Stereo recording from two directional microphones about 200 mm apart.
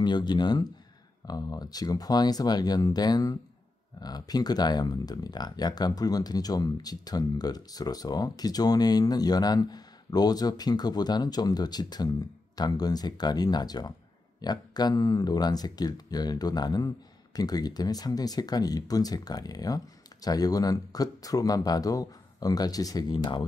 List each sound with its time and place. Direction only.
0.0 s speech: 20° left (ahead or behind)